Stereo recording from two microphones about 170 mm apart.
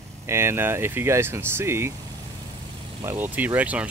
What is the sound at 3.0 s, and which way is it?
Speech, 15° right (ahead or behind).